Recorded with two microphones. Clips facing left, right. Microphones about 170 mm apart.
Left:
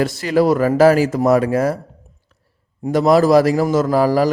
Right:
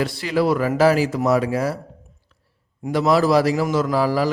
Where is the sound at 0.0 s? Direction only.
45° left (ahead or behind).